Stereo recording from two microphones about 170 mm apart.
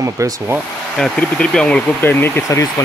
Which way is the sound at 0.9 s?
5° left (ahead or behind).